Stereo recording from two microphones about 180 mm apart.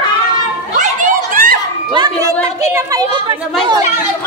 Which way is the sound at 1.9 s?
20° right (ahead or behind).